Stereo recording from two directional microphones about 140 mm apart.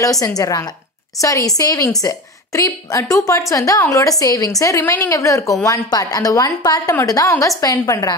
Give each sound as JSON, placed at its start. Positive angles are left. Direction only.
{"t": 0.0, "sound": "a woman's voice", "side_deg": 25}